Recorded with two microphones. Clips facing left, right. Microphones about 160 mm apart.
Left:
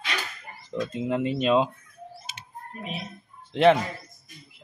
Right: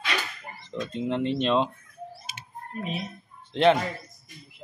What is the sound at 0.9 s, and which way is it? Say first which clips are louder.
Speech: right 1 dB; 5° left (ahead or behind).